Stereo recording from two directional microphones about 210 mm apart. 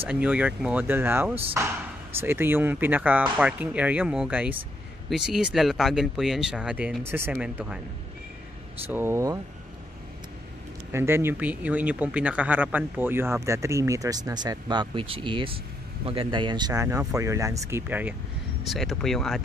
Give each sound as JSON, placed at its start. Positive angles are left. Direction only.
{"t": 0.0, "sound": "speech", "side_deg": -5}
{"t": 8.8, "sound": "speech", "side_deg": -10}
{"t": 10.9, "sound": "speech", "side_deg": -10}